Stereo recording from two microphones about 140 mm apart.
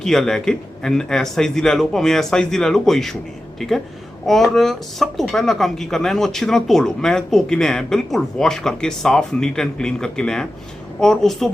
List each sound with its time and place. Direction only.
0.0 s speech: 5° left (ahead or behind)